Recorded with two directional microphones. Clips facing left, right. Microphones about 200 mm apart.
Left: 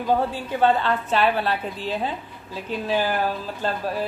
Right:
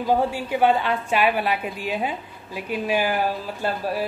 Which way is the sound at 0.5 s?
10° right (ahead or behind).